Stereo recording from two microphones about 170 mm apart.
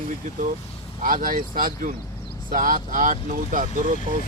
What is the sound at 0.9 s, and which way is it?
Speech, 55° right (ahead or behind).